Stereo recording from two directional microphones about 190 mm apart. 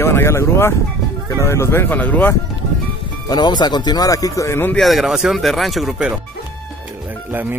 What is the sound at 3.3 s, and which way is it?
Speech, 20° left (ahead or behind).